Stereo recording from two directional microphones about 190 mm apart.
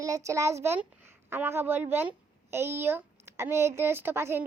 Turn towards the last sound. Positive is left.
turn(degrees=-10)  # may be behind; listen again after turning